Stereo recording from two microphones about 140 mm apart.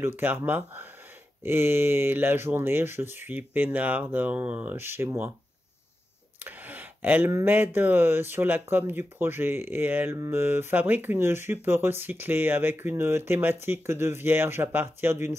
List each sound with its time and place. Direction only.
0.0 s speech: 15° right (ahead or behind)
6.4 s speech: 15° right (ahead or behind)